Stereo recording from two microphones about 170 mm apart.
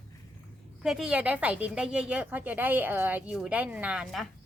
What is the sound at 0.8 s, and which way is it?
Speech, 5° right (ahead or behind).